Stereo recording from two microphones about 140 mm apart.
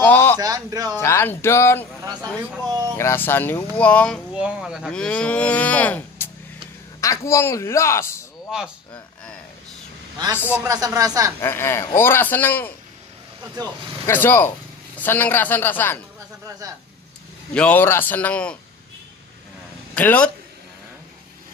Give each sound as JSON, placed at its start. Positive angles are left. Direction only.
{"t": 0.0, "sound": "a sound", "side_deg": 15}
{"t": 0.4, "sound": "speech", "side_deg": -25}
{"t": 0.9, "sound": "speech", "side_deg": 15}
{"t": 3.0, "sound": "speech", "side_deg": 15}
{"t": 4.3, "sound": "a man's voice", "side_deg": -5}
{"t": 10.3, "sound": "a man's voice", "side_deg": -10}
{"t": 11.0, "sound": "speech", "side_deg": -25}
{"t": 11.4, "sound": "speech", "side_deg": 15}
{"t": 14.0, "sound": "speech", "side_deg": 15}
{"t": 16.4, "sound": "speech", "side_deg": -25}
{"t": 17.6, "sound": "speech", "side_deg": 10}
{"t": 19.9, "sound": "a man's voice", "side_deg": 10}